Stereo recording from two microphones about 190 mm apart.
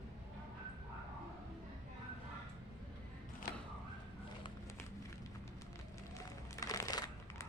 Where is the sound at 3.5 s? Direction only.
55° left (ahead or behind).